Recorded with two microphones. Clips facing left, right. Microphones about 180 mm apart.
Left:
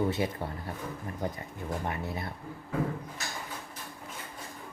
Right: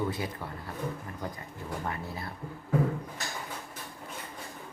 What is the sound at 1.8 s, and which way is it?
Speech, 20° left (ahead or behind).